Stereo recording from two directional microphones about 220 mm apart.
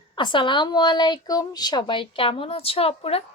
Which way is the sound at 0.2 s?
20° left (ahead or behind).